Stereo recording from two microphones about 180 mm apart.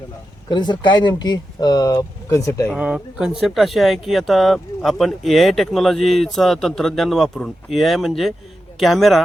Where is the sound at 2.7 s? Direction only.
5° right (ahead or behind).